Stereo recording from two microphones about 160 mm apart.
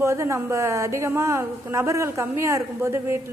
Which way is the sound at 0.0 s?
20° right (ahead or behind).